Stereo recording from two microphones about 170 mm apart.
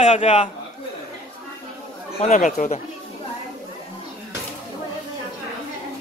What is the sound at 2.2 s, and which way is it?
Speech, 45° left (ahead or behind).